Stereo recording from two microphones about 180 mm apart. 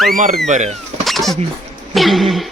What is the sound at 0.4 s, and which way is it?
Speech, 40° right (ahead or behind).